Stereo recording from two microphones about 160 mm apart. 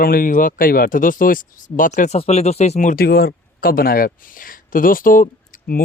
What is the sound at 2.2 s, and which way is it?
Speech, 40° left (ahead or behind).